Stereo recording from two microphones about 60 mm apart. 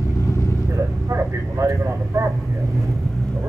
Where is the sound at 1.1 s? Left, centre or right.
Right.